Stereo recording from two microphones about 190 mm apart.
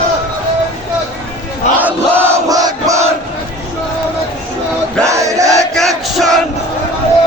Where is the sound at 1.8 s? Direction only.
10° right (ahead or behind).